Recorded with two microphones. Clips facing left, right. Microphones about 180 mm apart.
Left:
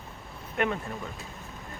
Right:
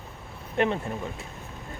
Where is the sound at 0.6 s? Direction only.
30° right (ahead or behind).